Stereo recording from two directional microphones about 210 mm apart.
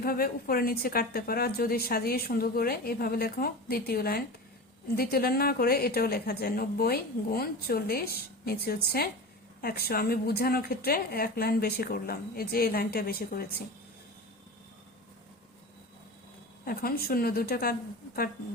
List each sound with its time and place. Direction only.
0.0 s a woman's voice: 45° left (ahead or behind)
16.6 s a woman's voice: 45° left (ahead or behind)